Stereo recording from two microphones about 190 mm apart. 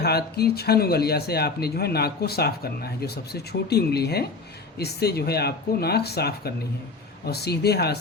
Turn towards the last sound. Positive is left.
turn(degrees=55)  # may be behind; listen again after turning